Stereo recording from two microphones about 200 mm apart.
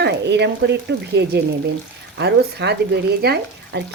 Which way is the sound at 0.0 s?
60° right (ahead or behind).